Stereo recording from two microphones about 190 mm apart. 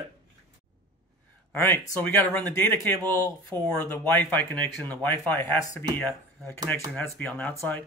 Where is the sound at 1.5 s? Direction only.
10° left (ahead or behind).